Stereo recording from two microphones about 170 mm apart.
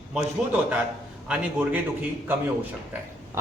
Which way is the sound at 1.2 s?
5° right (ahead or behind).